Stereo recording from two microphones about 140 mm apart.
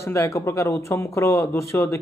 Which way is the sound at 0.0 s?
20° left (ahead or behind).